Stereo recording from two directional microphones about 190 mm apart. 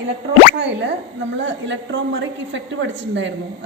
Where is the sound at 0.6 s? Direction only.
65° right (ahead or behind).